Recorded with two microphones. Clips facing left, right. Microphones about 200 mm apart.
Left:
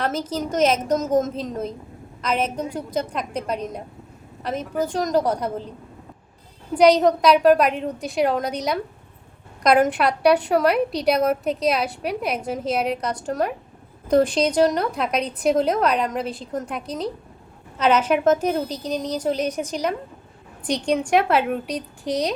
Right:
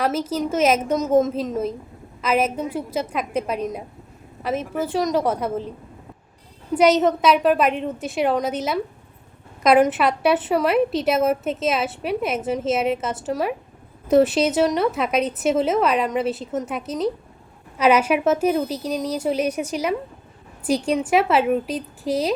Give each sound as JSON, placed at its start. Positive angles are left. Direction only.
{"t": 0.0, "sound": "a woman's voice", "side_deg": -5}
{"t": 6.7, "sound": "a woman's voice", "side_deg": -5}